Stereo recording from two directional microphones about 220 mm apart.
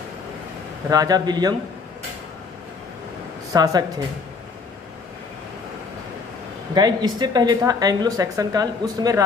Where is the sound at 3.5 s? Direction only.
15° right (ahead or behind).